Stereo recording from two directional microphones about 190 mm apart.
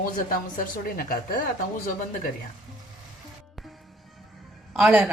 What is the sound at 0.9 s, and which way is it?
Speech, 50° left (ahead or behind).